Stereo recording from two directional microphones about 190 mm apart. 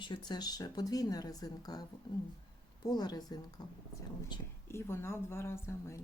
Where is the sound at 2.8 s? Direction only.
20° left (ahead or behind).